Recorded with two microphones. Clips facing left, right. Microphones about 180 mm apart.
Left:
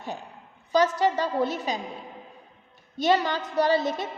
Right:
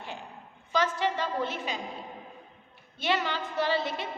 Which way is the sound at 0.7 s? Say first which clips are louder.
Left 6 dB; 40° left (ahead or behind).